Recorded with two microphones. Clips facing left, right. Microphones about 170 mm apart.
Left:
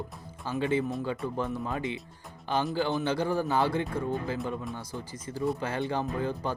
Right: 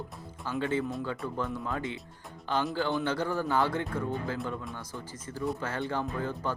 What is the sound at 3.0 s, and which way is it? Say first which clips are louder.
Speech: left 2 dB; 15° left (ahead or behind).